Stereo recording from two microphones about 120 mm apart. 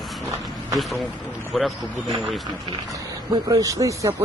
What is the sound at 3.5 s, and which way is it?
Speech, 30° right (ahead or behind).